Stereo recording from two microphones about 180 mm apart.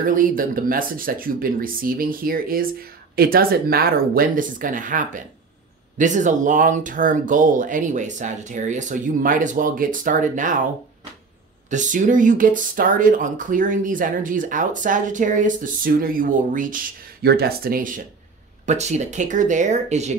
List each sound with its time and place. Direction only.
0.0 s speech: 50° right (ahead or behind)
11.7 s speech: 45° right (ahead or behind)
18.7 s speech: 40° right (ahead or behind)